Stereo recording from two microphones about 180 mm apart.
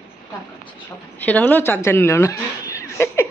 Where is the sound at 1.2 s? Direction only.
10° left (ahead or behind).